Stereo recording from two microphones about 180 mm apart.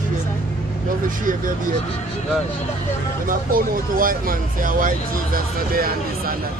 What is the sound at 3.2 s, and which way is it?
Speech, 50° right (ahead or behind).